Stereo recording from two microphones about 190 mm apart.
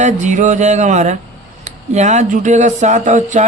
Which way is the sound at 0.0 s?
40° right (ahead or behind).